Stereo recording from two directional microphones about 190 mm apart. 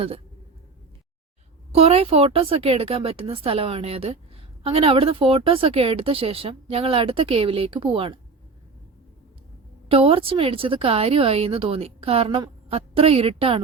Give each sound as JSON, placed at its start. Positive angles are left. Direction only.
{"t": 1.7, "sound": "speech", "side_deg": -30}
{"t": 9.9, "sound": "a woman's voice", "side_deg": -30}